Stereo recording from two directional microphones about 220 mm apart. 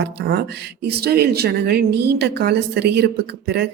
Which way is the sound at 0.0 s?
50° right (ahead or behind).